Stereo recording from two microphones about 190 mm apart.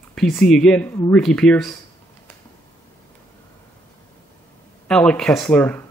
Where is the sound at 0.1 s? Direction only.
5° left (ahead or behind).